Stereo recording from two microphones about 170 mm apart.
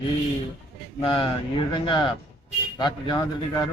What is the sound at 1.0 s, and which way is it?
A man's voice, 30° left (ahead or behind).